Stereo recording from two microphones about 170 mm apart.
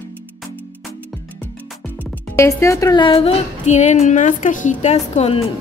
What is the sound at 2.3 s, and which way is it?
A woman's voice, 15° left (ahead or behind).